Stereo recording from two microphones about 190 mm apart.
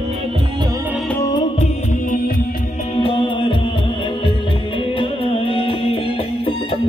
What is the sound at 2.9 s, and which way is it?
Music, 25° left (ahead or behind).